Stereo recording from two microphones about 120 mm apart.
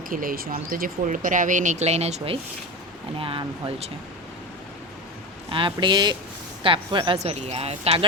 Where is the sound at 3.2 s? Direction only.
50° right (ahead or behind).